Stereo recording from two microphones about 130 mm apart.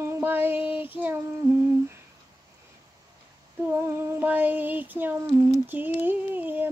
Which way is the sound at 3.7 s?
20° right (ahead or behind).